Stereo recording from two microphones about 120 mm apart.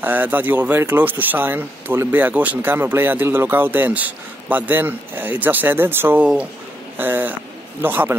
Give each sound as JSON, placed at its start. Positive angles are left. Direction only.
{"t": 0.0, "sound": "speech", "side_deg": -15}